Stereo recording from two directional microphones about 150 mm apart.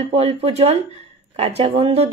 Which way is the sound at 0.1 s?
40° right (ahead or behind).